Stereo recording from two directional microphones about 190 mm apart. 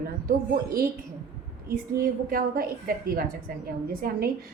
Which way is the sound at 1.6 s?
50° right (ahead or behind).